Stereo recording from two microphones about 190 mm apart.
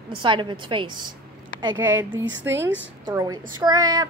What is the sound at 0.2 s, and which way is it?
Speech, 25° right (ahead or behind).